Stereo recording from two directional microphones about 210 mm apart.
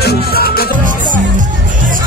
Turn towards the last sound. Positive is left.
turn(degrees=45)  # may be behind; listen again after turning